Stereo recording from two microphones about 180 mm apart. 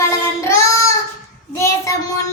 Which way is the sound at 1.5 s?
15° left (ahead or behind).